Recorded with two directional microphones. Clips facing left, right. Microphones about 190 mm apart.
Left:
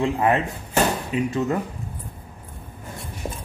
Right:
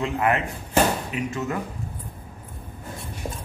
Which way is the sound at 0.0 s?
30° left (ahead or behind).